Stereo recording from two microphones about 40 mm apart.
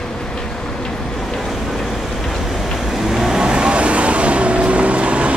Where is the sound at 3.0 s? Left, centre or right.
Centre; by 5.3 s right.